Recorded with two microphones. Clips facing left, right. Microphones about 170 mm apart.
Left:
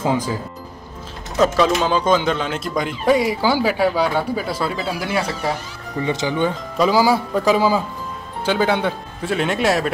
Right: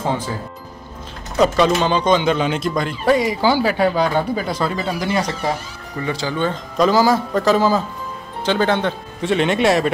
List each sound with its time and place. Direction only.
1.4 s speech: 5° left (ahead or behind)
2.7 s speech: 10° left (ahead or behind)
5.9 s speech: 20° left (ahead or behind); by 9.8 s centre (ahead or behind)